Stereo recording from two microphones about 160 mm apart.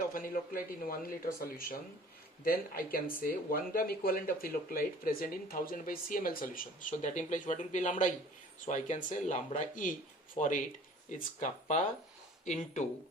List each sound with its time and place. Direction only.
0.1 s speech: 60° left (ahead or behind)